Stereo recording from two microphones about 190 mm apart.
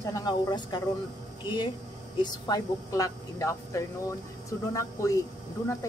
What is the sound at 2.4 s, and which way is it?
Speech, 20° left (ahead or behind).